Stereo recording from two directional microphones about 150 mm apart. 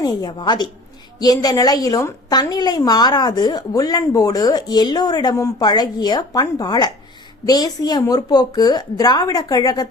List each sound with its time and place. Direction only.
0.0 s a woman's voice: 30° left (ahead or behind)